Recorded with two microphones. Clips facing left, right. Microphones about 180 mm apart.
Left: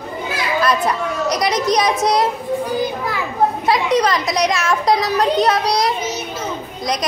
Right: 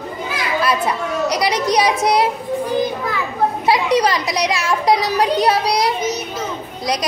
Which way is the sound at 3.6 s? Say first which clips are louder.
Right 3 dB; 30° right (ahead or behind).